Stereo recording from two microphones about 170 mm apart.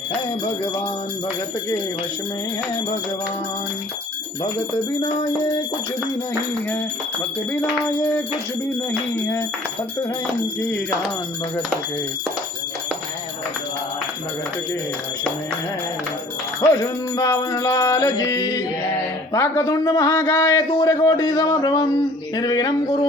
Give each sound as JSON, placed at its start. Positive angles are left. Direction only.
{"t": 17.2, "sound": "a man's voice", "side_deg": 20}